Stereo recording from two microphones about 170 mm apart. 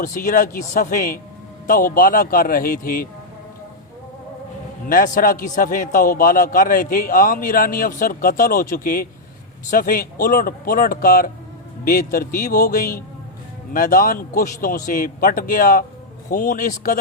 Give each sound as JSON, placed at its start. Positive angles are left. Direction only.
{"t": 0.0, "sound": "a man's voice", "side_deg": 50}
{"t": 4.9, "sound": "a man's voice", "side_deg": 55}